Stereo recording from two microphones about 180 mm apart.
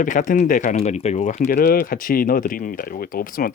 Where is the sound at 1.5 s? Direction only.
55° left (ahead or behind).